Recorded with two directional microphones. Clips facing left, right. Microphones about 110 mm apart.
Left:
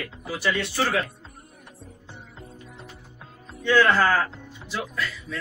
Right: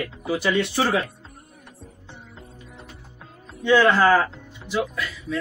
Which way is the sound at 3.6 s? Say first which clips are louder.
Right 3 dB; 20° right (ahead or behind).